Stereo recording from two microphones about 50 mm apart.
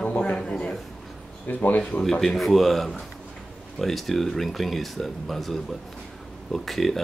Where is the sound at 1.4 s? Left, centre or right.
Left.